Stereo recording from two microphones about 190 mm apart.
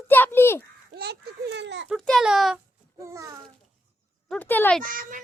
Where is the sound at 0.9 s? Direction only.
60° right (ahead or behind).